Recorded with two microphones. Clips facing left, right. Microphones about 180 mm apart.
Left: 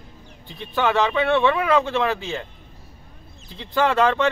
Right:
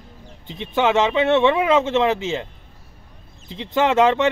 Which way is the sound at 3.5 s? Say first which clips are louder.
Right 2 dB; 20° right (ahead or behind).